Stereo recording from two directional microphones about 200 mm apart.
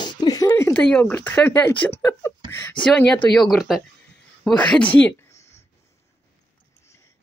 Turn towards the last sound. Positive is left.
turn(degrees=15)  # may be behind; listen again after turning